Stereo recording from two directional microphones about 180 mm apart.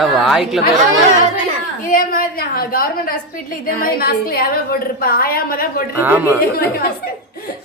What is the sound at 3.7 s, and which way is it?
A woman's voice, 55° left (ahead or behind).